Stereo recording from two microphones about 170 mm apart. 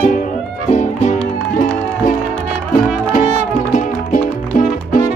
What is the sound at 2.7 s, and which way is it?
Music, 50° left (ahead or behind).